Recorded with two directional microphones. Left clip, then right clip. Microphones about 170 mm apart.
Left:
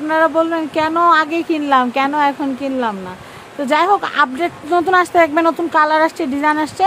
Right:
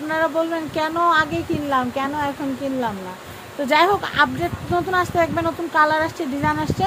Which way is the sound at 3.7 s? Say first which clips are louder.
Left 3 dB; 30° left (ahead or behind).